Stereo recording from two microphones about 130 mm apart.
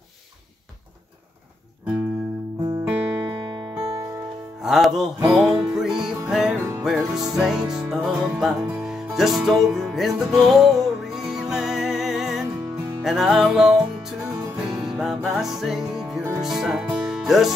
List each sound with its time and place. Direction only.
2.9 s music: 15° right (ahead or behind)
3.3 s music: 35° right (ahead or behind)
4.6 s music: centre (ahead or behind)